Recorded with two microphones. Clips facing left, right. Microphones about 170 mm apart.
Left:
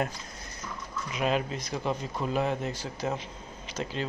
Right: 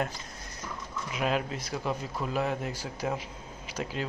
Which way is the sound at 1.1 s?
5° right (ahead or behind).